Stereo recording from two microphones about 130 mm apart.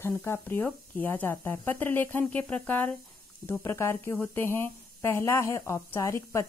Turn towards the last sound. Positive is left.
turn(degrees=20)  # may be behind; listen again after turning